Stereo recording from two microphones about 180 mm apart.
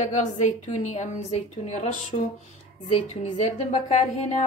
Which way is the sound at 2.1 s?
35° left (ahead or behind).